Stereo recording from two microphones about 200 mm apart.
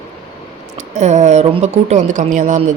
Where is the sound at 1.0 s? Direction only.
35° right (ahead or behind).